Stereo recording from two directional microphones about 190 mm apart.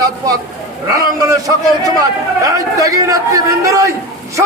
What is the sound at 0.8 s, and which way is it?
A man's voice, 20° right (ahead or behind).